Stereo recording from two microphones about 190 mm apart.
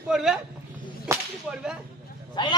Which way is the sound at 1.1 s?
15° right (ahead or behind).